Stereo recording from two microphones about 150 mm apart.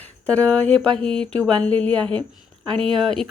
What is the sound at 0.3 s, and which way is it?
A woman's voice, 10° left (ahead or behind).